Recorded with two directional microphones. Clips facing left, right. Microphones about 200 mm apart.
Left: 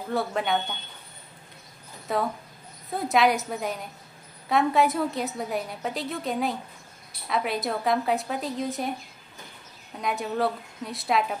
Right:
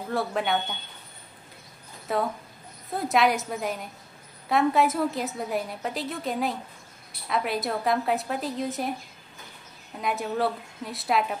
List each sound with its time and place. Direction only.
0.1 s a woman's voice: centre (ahead or behind)
2.1 s a woman's voice: centre (ahead or behind)
9.9 s a woman's voice: centre (ahead or behind)